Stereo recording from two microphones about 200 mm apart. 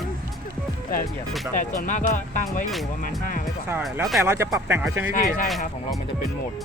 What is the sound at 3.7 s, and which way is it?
Speech, 5° right (ahead or behind).